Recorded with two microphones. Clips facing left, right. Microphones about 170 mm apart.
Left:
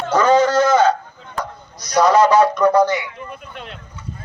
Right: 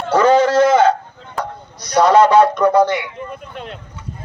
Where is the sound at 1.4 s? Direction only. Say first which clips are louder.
Right 4 dB; 30° right (ahead or behind).